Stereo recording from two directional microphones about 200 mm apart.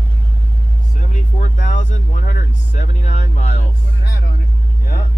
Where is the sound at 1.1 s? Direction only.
40° left (ahead or behind).